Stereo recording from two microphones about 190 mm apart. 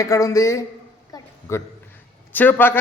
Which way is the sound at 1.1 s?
15° left (ahead or behind).